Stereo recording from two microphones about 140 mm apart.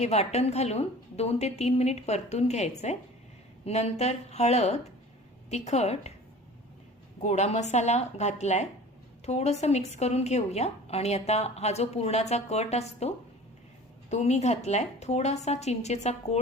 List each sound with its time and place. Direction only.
0.0 s a woman's voice: 50° left (ahead or behind)
7.2 s a woman's voice: 55° left (ahead or behind)